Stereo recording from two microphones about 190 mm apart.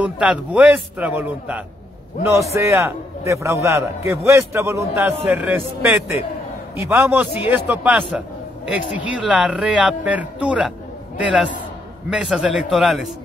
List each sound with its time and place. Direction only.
0.0 s a man's voice: 5° right (ahead or behind)